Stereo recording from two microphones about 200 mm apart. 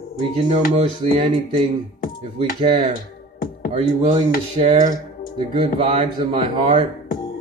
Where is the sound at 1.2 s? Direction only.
20° right (ahead or behind).